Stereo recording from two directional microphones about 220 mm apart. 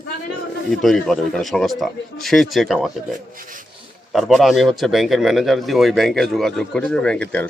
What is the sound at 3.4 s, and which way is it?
Rub, 35° right (ahead or behind).